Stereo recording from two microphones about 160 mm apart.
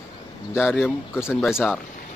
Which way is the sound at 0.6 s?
15° left (ahead or behind).